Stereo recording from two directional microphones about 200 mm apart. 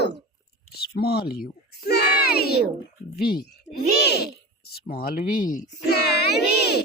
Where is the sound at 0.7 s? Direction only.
50° left (ahead or behind).